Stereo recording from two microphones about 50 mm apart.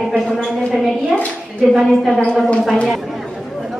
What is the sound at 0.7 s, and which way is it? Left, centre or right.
Dishes, centre.